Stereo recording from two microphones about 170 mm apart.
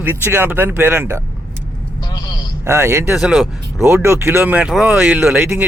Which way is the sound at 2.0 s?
25° left (ahead or behind).